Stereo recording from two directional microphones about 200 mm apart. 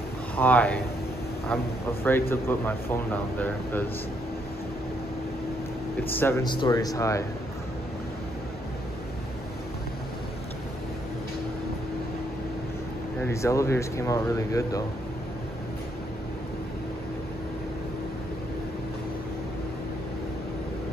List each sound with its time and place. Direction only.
0.4 s speech: 10° left (ahead or behind)
1.9 s speech: 10° left (ahead or behind)
6.0 s speech: 10° left (ahead or behind)
6.4 s speech: 20° left (ahead or behind)
13.2 s speech: 15° left (ahead or behind)